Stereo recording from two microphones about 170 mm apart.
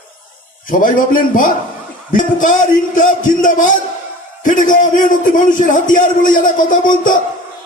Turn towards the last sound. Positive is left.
turn(degrees=50)  # may be behind; listen again after turning